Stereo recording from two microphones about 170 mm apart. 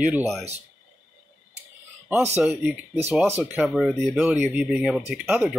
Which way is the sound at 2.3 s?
10° right (ahead or behind).